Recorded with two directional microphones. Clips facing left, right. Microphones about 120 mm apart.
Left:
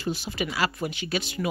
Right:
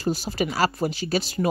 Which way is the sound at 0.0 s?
40° right (ahead or behind).